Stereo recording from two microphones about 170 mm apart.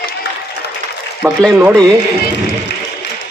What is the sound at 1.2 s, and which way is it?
Speech, centre (ahead or behind).